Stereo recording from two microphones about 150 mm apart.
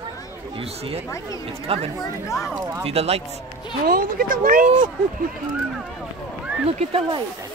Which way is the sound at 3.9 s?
75° right (ahead or behind).